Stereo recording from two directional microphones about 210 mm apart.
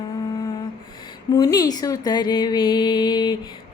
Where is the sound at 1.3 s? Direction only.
20° left (ahead or behind).